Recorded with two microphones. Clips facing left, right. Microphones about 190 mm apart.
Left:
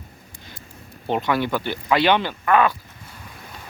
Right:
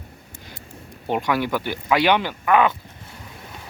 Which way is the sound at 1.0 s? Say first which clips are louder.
Even; 10° right (ahead or behind).